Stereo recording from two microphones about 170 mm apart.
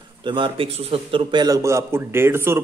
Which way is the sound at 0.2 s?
30° right (ahead or behind).